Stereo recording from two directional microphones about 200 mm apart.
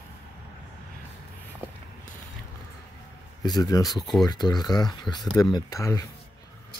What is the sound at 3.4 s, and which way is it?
Speech, 20° left (ahead or behind).